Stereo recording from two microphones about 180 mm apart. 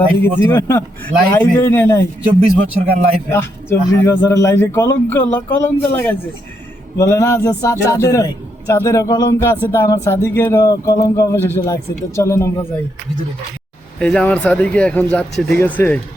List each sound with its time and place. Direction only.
0.2 s speech: 15° left (ahead or behind)
2.4 s a man's voice: 40° right (ahead or behind)
3.2 s speech: 15° left (ahead or behind)
14.0 s speech: 5° left (ahead or behind)